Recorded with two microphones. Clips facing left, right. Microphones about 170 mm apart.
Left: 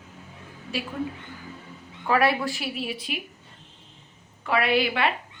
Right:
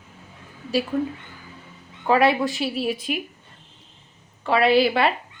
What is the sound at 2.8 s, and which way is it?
Speech, 45° right (ahead or behind).